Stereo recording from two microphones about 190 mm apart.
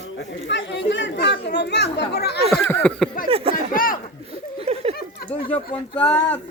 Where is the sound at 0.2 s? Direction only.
75° left (ahead or behind).